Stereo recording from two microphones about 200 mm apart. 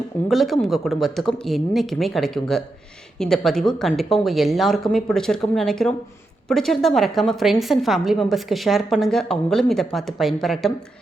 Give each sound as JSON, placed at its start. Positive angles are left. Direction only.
{"t": 0.3, "sound": "a woman's voice", "side_deg": 0}